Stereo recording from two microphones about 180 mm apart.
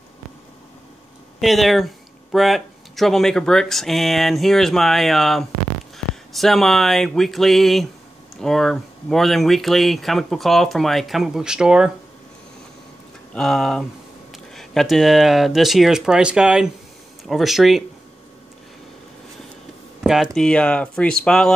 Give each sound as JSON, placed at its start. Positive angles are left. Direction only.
{"t": 1.4, "sound": "speech", "side_deg": 0}
{"t": 13.3, "sound": "speech", "side_deg": 0}
{"t": 20.0, "sound": "a sound", "side_deg": -5}
{"t": 20.3, "sound": "speech", "side_deg": 5}